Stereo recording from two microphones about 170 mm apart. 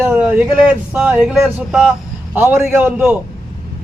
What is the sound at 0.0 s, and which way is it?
A man's voice, 10° right (ahead or behind).